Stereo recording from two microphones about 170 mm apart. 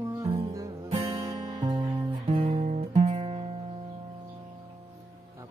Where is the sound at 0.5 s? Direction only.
20° right (ahead or behind).